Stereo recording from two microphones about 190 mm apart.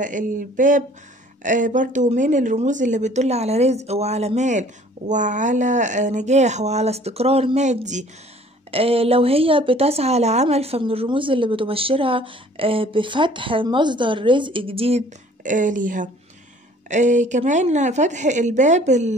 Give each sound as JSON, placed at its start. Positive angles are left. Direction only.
{"t": 0.0, "sound": "a woman's voice", "side_deg": -45}